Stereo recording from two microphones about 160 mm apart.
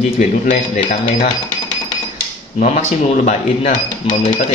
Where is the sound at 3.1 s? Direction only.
45° left (ahead or behind).